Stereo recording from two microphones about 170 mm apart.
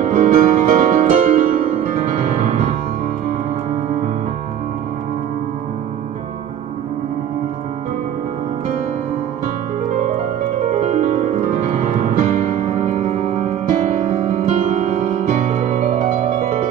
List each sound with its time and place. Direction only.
0.1 s music: 50° right (ahead or behind)
1.9 s music: 40° right (ahead or behind)
10.6 s music: 45° right (ahead or behind)